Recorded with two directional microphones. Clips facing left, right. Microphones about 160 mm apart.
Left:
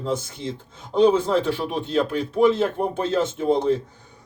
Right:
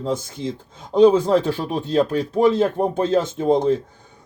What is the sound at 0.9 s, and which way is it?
Speech, 40° right (ahead or behind).